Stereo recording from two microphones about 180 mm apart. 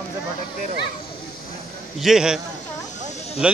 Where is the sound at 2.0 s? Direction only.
5° right (ahead or behind).